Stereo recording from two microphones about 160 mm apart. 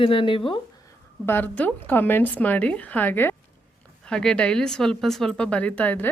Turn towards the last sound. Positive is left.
turn(degrees=10)  # may be behind; listen again after turning